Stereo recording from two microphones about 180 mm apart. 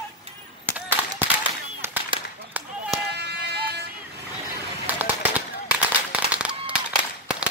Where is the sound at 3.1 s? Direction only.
65° right (ahead or behind).